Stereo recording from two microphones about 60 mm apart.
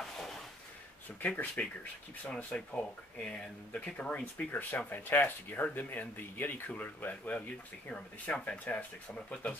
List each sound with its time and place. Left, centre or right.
1.2 s speech: left